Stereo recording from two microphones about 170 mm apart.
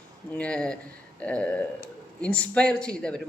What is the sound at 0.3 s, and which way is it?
A woman's voice, 5° left (ahead or behind).